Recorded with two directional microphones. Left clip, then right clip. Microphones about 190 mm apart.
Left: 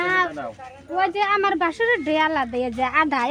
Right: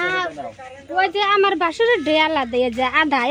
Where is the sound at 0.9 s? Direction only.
50° right (ahead or behind).